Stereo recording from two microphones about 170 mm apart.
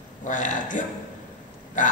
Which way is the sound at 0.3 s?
50° left (ahead or behind).